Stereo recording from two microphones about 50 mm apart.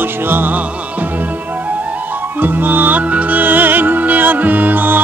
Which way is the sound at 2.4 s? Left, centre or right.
Right.